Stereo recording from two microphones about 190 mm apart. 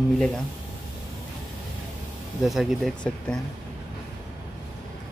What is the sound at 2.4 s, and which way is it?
Speech, centre (ahead or behind).